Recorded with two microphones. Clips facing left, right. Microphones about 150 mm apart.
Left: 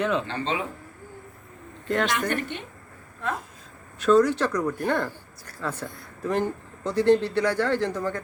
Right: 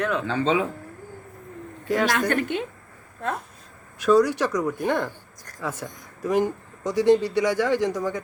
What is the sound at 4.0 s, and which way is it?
A man's voice, 10° right (ahead or behind).